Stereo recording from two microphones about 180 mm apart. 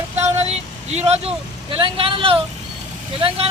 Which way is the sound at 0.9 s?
35° right (ahead or behind).